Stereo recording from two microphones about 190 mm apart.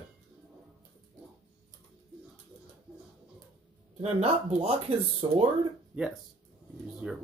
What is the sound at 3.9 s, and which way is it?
Speech, 30° right (ahead or behind).